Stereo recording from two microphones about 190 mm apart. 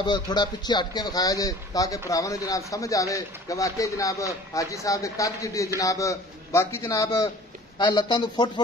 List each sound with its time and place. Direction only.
0.0 s a man's voice: 25° left (ahead or behind)